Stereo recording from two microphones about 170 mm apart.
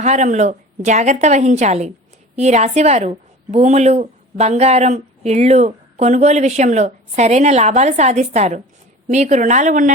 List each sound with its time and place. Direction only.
0.0 s a woman's voice: 45° right (ahead or behind)